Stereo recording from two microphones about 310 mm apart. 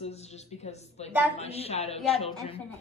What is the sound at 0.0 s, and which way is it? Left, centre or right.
A woman's voice, left.